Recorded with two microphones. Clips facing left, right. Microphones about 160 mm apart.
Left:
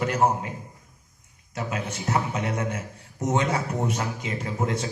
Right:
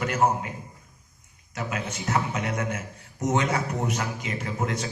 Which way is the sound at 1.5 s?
30° left (ahead or behind).